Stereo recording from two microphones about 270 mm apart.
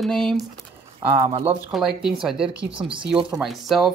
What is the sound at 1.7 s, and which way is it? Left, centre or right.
Speech, centre.